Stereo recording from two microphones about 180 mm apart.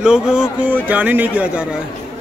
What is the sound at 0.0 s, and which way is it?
Speech, 5° right (ahead or behind).